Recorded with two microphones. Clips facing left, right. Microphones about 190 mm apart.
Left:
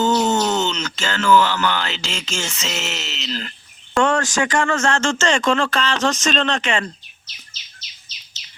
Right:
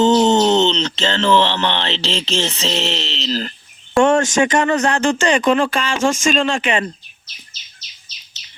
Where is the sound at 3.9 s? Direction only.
20° right (ahead or behind).